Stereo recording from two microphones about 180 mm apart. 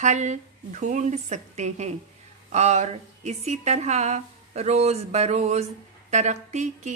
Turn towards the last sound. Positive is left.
turn(degrees=-40)  # may be behind; listen again after turning